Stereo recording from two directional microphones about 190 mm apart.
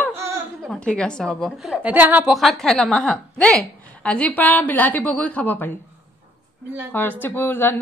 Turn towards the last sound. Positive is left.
turn(degrees=10)  # may be behind; listen again after turning